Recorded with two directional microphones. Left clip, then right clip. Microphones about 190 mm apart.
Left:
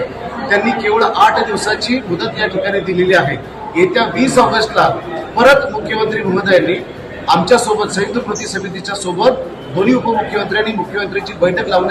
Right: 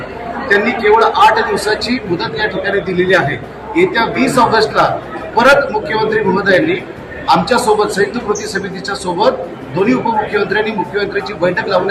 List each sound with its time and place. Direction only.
0.6 s a man's voice: centre (ahead or behind)